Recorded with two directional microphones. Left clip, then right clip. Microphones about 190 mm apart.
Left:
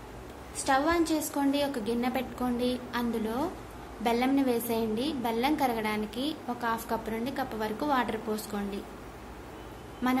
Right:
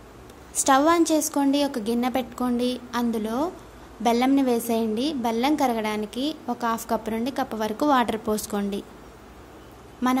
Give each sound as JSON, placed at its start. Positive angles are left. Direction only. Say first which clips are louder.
{"t": 0.7, "sound": "a woman's voice", "louder": "right 7 dB", "side_deg": -55}
{"t": 10.0, "sound": "a woman's voice", "louder": "right 6 dB", "side_deg": -45}